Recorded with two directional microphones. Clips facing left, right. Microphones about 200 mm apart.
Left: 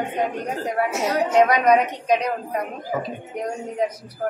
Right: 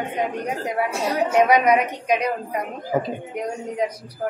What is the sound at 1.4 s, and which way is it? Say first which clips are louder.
Speech: even; 10° right (ahead or behind).